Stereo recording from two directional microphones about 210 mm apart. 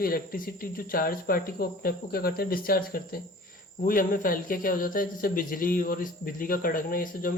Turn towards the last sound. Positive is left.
turn(degrees=40)  # may be behind; listen again after turning